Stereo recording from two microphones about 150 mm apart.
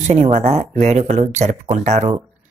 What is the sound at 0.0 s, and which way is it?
Speech, 50° right (ahead or behind).